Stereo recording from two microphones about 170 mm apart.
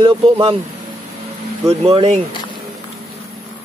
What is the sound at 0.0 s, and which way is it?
Speech, 35° right (ahead or behind).